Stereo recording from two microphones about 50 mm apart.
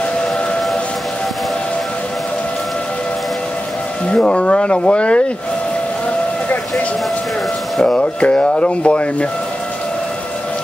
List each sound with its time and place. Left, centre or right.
4.2 s speech: left
7.8 s speech: left